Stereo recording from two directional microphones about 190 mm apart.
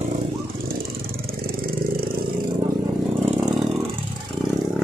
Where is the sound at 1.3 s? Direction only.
50° right (ahead or behind).